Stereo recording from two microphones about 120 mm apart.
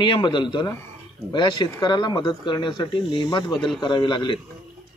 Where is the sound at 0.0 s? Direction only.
40° left (ahead or behind).